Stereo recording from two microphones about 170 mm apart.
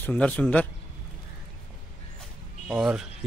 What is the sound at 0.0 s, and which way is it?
Speech, 10° left (ahead or behind).